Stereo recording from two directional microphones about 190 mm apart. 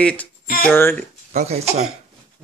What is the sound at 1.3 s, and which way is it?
Speech, 35° right (ahead or behind).